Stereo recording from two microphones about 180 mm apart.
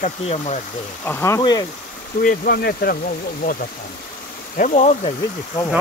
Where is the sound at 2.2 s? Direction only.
55° left (ahead or behind).